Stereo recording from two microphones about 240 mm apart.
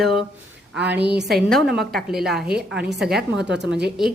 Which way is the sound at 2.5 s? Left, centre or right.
Right.